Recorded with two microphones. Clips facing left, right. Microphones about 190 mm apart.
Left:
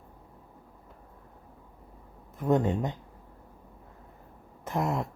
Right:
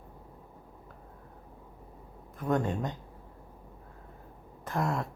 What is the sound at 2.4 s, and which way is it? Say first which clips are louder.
Speech: left 4 dB; 20° left (ahead or behind).